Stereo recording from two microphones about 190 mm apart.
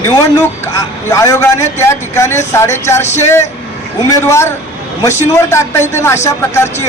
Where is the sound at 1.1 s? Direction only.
15° left (ahead or behind).